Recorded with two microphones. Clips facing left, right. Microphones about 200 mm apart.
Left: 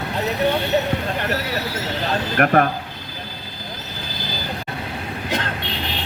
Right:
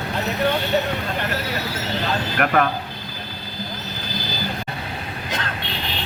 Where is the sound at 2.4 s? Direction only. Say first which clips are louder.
Left 3 dB; 40° left (ahead or behind).